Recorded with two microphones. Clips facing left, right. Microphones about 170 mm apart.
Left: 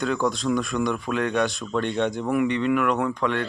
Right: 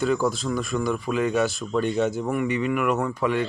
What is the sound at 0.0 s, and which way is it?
Speech, 5° right (ahead or behind).